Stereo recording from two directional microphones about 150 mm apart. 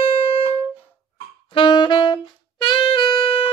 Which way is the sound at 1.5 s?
30° left (ahead or behind).